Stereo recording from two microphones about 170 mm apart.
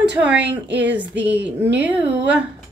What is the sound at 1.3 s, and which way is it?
Speech, 90° right.